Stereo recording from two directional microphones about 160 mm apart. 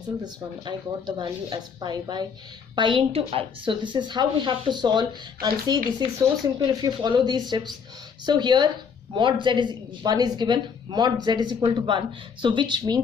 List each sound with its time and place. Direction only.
0.2 s a woman's voice: 25° right (ahead or behind)